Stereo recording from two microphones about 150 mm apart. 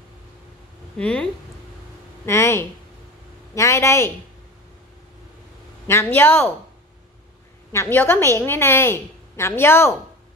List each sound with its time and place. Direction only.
0.9 s a woman's voice: 10° left (ahead or behind)
2.2 s speech: 20° left (ahead or behind)
5.9 s a woman's voice: 15° left (ahead or behind)
7.7 s a woman's voice: 15° left (ahead or behind)